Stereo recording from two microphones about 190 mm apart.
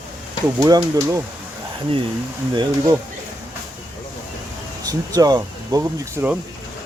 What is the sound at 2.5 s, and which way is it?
Speech, 15° right (ahead or behind).